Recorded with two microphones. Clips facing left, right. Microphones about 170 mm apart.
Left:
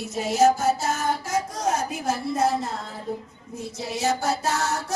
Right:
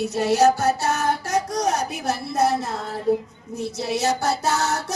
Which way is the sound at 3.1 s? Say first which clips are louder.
Right 13 dB; 75° right (ahead or behind).